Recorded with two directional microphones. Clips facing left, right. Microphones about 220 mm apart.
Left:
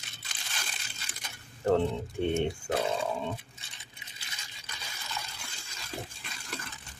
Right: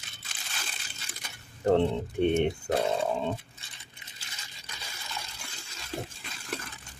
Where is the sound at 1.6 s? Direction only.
20° right (ahead or behind).